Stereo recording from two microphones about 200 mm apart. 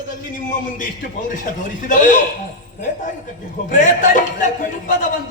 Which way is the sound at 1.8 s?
40° left (ahead or behind).